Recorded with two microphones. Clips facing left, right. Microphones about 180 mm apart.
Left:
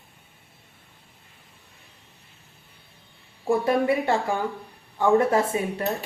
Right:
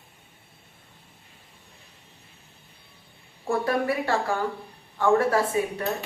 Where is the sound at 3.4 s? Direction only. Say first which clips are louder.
Left 3 dB; 20° left (ahead or behind).